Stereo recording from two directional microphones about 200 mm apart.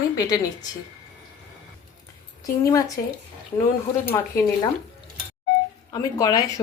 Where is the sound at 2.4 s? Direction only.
15° left (ahead or behind).